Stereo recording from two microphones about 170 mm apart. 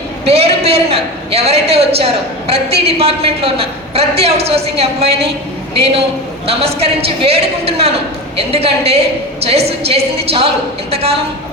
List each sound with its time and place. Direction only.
0.3 s a man's voice: 35° right (ahead or behind)